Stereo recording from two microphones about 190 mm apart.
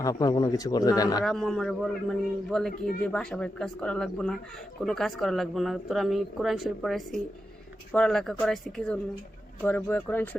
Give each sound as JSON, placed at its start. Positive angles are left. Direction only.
{"t": 0.0, "sound": "a man's voice", "side_deg": 20}
{"t": 1.2, "sound": "a man's voice", "side_deg": 0}